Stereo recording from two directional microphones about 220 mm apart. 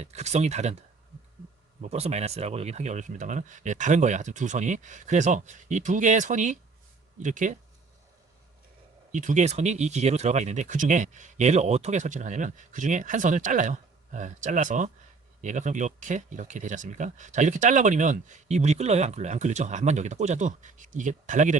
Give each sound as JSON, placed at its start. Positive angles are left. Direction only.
{"t": 0.0, "sound": "speech", "side_deg": -30}
{"t": 9.1, "sound": "speech", "side_deg": -35}